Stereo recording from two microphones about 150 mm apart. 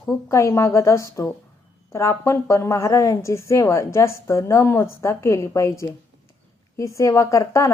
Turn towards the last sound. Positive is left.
turn(degrees=20)  # may be behind; listen again after turning